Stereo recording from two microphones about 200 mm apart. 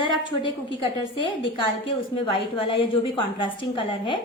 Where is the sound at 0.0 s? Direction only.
20° left (ahead or behind).